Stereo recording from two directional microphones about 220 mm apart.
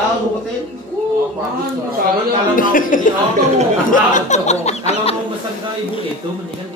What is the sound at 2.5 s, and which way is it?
Speech, 40° left (ahead or behind).